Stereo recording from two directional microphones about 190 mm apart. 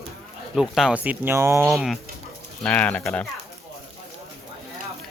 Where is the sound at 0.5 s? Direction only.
5° right (ahead or behind).